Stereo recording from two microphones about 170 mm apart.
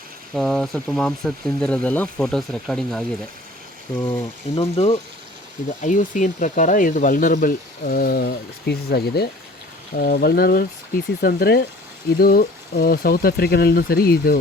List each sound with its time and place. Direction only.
0.3 s speech: 5° left (ahead or behind)
4.5 s speech: 40° left (ahead or behind)
5.8 s speech: 50° left (ahead or behind); by 14.3 s 65° left (ahead or behind)